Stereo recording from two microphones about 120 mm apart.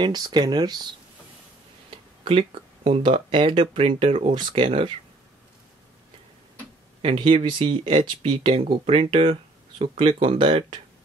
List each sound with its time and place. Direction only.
0.0 s speech: 35° right (ahead or behind)
2.2 s speech: 50° right (ahead or behind)
7.0 s speech: 50° right (ahead or behind)